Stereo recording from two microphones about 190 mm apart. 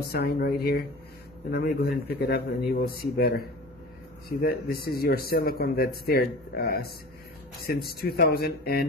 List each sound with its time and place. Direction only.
0.0 s speech: 55° left (ahead or behind)